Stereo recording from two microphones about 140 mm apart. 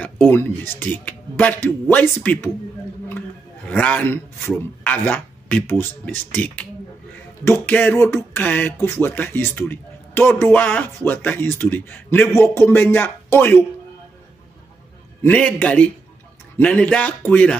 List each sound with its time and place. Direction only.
0.0 s a man's voice: 15° left (ahead or behind)
3.1 s a sound: 10° left (ahead or behind)
4.8 s a man's voice: 15° left (ahead or behind)
15.2 s a man's voice: 10° left (ahead or behind)